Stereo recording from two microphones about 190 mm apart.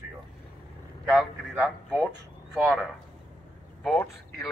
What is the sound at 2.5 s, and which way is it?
Speech, centre (ahead or behind).